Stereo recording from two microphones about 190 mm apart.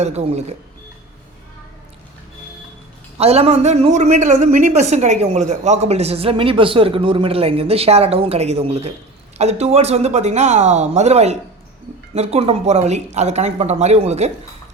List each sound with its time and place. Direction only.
0.0 s a man's voice: 35° right (ahead or behind)
3.2 s a man's voice: 30° right (ahead or behind)